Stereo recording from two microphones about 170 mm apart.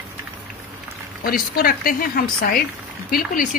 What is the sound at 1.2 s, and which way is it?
Speech, 60° left (ahead or behind).